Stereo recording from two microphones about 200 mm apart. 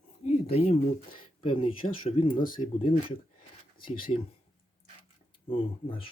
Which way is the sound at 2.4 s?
40° left (ahead or behind).